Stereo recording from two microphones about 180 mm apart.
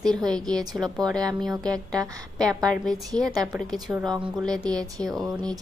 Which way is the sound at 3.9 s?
10° right (ahead or behind).